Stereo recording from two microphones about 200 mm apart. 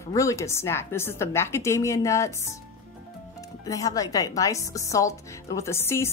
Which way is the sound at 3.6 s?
15° left (ahead or behind).